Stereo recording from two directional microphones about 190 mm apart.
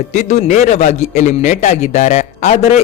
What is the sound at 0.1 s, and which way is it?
A man's voice, 40° left (ahead or behind).